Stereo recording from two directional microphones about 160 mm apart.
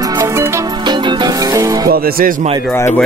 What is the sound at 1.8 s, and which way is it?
Music, 70° right (ahead or behind).